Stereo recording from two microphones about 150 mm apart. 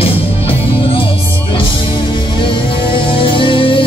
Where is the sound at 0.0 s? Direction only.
40° left (ahead or behind).